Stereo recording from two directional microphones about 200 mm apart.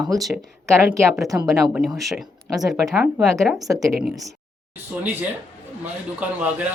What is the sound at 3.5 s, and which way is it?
Speech, 15° right (ahead or behind).